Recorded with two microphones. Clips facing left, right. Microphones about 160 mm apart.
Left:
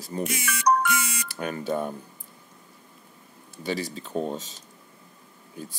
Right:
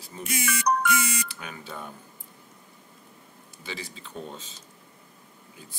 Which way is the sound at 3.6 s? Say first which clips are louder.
Left 9 dB; 45° left (ahead or behind).